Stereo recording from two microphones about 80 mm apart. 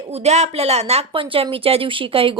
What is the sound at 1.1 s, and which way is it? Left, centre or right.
Speech, right.